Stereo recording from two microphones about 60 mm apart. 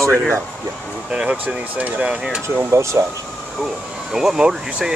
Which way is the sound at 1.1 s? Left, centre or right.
Centre.